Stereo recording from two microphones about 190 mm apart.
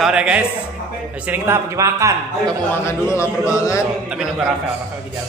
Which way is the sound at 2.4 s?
10° left (ahead or behind).